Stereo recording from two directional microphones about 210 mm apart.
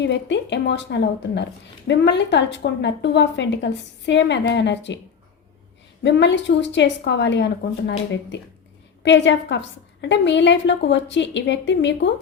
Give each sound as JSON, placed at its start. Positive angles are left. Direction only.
{"t": 0.0, "sound": "a woman's voice", "side_deg": 55}
{"t": 6.0, "sound": "a woman's voice", "side_deg": 55}